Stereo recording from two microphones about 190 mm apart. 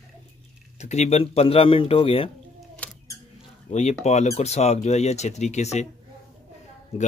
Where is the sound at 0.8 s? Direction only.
35° left (ahead or behind).